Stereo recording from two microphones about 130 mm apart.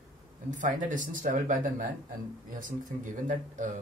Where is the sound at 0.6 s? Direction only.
90° right.